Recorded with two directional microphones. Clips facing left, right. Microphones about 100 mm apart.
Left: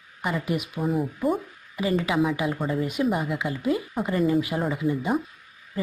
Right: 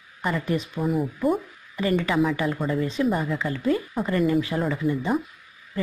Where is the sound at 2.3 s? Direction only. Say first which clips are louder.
Right 1 dB; 15° left (ahead or behind).